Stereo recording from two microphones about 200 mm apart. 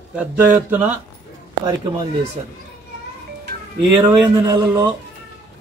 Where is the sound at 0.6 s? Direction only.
10° right (ahead or behind).